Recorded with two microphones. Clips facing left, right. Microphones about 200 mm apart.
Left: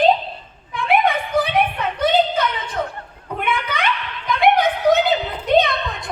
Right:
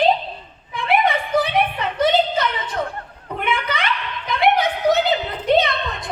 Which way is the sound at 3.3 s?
55° left (ahead or behind).